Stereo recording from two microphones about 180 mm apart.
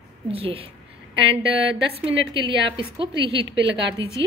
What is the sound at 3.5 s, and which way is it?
Speech, 75° right (ahead or behind).